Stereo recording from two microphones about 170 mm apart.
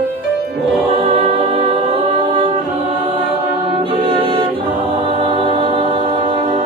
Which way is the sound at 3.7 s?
30° right (ahead or behind).